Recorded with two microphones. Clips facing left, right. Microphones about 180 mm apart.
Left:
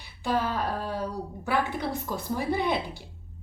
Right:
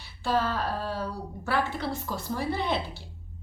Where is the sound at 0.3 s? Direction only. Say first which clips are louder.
Even; 15° left (ahead or behind).